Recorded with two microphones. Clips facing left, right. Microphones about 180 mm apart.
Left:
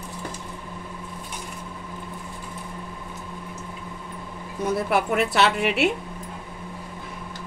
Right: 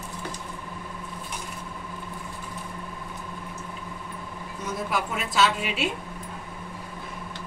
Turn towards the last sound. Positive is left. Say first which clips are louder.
# left 4 dB
turn(degrees=65)  # may be behind; listen again after turning